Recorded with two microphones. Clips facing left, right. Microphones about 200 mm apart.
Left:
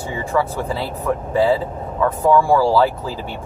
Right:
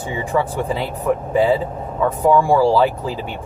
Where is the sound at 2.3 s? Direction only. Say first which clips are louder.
Right 1 dB; 15° right (ahead or behind).